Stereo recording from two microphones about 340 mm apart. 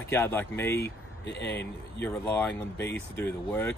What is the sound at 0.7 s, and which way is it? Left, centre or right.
Speech, left.